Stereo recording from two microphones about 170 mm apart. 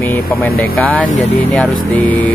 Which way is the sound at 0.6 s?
60° left (ahead or behind).